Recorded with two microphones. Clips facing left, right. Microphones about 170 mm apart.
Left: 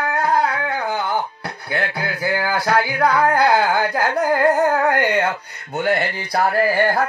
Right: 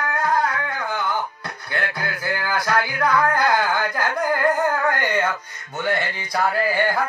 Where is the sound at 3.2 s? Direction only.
35° left (ahead or behind).